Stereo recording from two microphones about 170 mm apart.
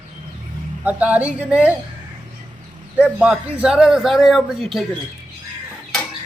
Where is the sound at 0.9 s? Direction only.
10° right (ahead or behind).